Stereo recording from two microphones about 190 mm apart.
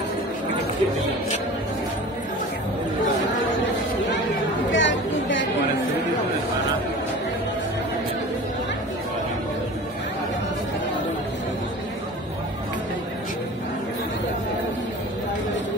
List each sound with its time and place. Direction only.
4.6 s chatter: 80° left